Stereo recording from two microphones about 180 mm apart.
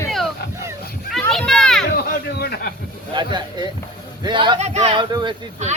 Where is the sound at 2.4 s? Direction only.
60° left (ahead or behind).